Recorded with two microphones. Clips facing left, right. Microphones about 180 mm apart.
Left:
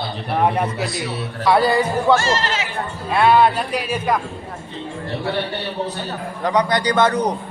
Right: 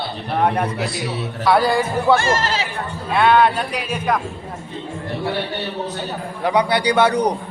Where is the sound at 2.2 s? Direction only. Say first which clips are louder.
Right 1 dB; 50° right (ahead or behind).